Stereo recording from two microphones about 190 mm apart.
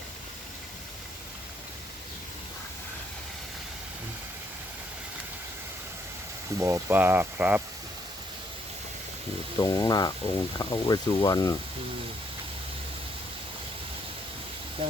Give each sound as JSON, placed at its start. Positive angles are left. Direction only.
{"t": 6.6, "sound": "speech", "side_deg": -15}
{"t": 9.6, "sound": "speech", "side_deg": 20}
{"t": 14.8, "sound": "speech", "side_deg": -30}